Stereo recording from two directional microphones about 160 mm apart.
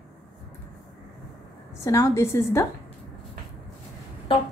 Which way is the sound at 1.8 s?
20° left (ahead or behind).